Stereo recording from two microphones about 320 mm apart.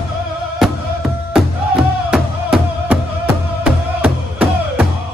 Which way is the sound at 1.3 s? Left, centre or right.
Centre.